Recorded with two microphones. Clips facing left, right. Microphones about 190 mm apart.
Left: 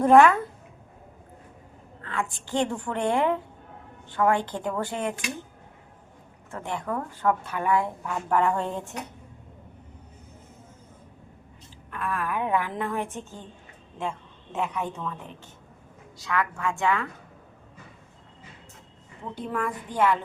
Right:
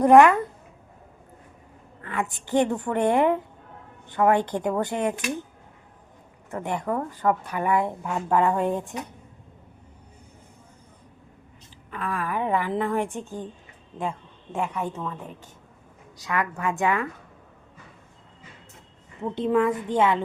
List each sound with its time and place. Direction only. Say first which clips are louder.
0.0 s speech: right 2 dB; 15° right (ahead or behind)
2.0 s a woman's voice: right 2 dB; 15° right (ahead or behind)
6.5 s speech: right 4 dB; 20° right (ahead or behind)
12.0 s a woman's voice: right 1 dB; 15° right (ahead or behind)
16.1 s speech: right 1 dB; 15° right (ahead or behind)
19.3 s a woman's voice: right 8 dB; 20° right (ahead or behind)